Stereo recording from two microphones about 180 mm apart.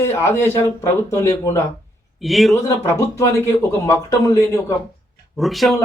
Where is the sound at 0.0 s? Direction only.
15° left (ahead or behind).